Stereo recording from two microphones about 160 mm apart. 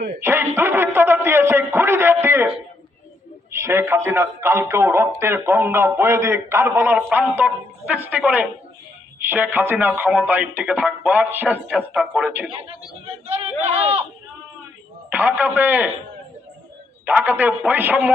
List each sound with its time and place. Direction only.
0.2 s a sound: 15° right (ahead or behind)
3.5 s a man's voice: 15° right (ahead or behind)
13.1 s speech: 40° right (ahead or behind)
15.1 s a man's voice: 10° right (ahead or behind)
17.1 s a man's voice: 10° right (ahead or behind)